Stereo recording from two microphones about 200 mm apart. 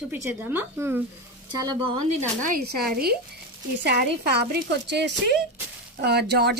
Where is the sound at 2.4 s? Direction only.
45° right (ahead or behind).